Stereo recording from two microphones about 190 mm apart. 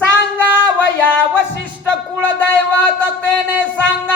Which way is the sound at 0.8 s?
10° left (ahead or behind).